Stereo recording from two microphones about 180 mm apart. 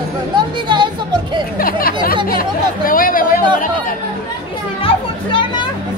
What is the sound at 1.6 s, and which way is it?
Speech, 55° left (ahead or behind).